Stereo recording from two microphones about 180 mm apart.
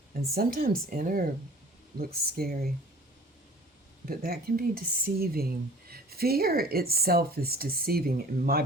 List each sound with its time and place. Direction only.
0.3 s speech: 55° right (ahead or behind)
4.0 s speech: 55° right (ahead or behind)